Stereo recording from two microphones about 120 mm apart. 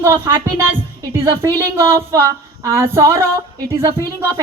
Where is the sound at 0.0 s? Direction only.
20° right (ahead or behind).